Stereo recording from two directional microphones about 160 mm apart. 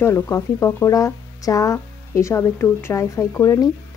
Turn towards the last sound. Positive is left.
turn(degrees=20)  # may be behind; listen again after turning